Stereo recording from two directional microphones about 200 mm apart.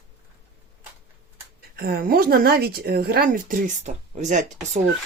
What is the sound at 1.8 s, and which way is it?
Speech, 45° right (ahead or behind).